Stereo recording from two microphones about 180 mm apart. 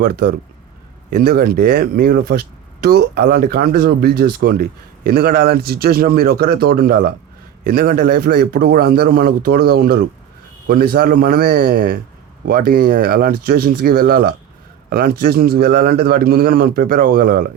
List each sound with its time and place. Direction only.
0.0 s speech: 60° right (ahead or behind)